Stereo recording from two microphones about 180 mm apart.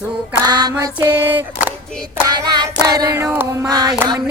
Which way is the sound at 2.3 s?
20° right (ahead or behind).